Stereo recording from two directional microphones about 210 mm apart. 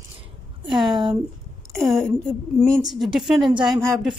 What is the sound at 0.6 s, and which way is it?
Speech, centre (ahead or behind).